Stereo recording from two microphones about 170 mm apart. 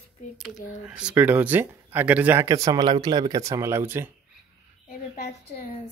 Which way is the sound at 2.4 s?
20° right (ahead or behind).